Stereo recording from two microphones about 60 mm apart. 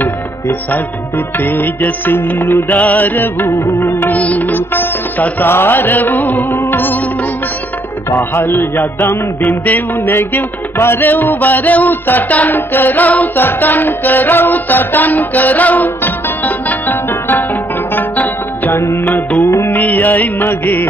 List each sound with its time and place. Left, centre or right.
0.5 s music: left
8.1 s music: left
10.1 s music: left
18.7 s music: left
19.0 s music: left